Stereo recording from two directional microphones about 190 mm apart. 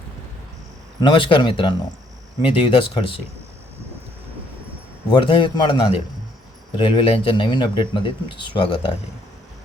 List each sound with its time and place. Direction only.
1.0 s speech: 25° left (ahead or behind)
5.0 s speech: 25° left (ahead or behind)